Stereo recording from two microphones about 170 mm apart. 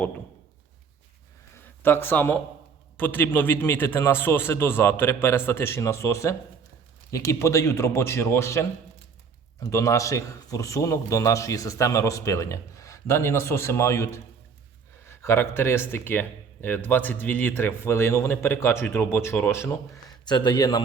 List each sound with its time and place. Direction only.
1.5 s a sound: 10° left (ahead or behind)
3.0 s speech: 10° left (ahead or behind)
20.2 s a man's voice: 25° left (ahead or behind)